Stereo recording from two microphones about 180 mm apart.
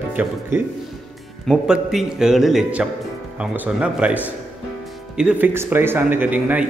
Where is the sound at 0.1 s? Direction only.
10° right (ahead or behind).